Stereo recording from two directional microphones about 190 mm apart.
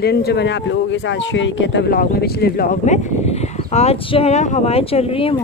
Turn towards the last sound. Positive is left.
turn(degrees=30)  # may be behind; listen again after turning